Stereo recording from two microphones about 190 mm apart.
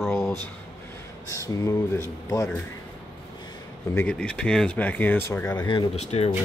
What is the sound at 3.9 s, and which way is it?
Speech, 5° left (ahead or behind).